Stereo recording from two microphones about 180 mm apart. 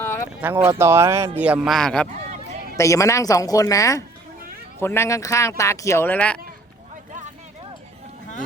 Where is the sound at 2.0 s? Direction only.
40° right (ahead or behind).